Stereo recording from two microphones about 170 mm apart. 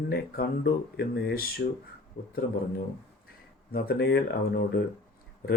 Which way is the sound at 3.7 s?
65° left (ahead or behind).